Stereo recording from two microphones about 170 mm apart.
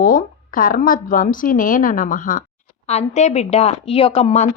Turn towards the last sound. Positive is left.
turn(degrees=40)  # may be behind; listen again after turning